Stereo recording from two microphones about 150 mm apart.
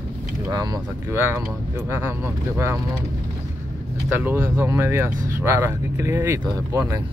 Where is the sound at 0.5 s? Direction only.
25° right (ahead or behind).